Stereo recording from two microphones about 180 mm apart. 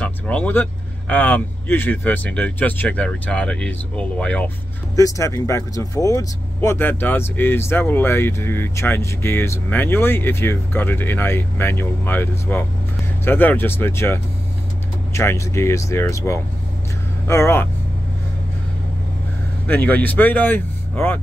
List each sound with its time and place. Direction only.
0.0 s speech: 10° left (ahead or behind)
4.9 s speech: 20° left (ahead or behind)
19.7 s speech: 10° left (ahead or behind)